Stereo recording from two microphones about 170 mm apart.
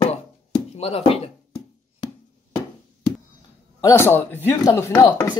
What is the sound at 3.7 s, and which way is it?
Speech, 15° left (ahead or behind).